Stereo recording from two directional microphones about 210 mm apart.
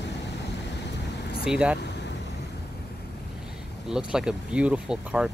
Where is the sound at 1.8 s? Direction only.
55° left (ahead or behind).